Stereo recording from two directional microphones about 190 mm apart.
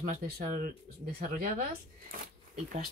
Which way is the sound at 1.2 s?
50° right (ahead or behind).